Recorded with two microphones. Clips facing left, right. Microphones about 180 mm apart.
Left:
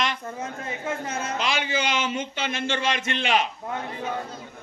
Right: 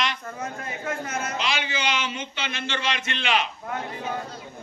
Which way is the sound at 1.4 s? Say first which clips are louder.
Left 3 dB; 50° left (ahead or behind).